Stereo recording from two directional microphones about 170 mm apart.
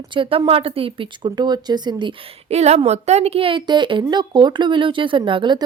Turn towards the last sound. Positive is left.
turn(degrees=-30)  # may be behind; listen again after turning